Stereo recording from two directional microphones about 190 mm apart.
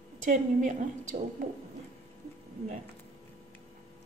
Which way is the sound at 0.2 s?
40° right (ahead or behind).